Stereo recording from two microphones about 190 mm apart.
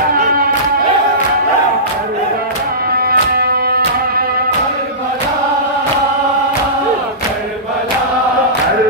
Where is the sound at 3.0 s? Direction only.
55° right (ahead or behind).